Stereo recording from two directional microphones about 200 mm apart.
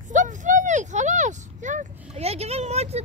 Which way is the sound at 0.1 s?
40° right (ahead or behind).